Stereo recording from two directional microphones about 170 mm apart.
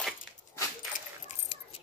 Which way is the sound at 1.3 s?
35° left (ahead or behind).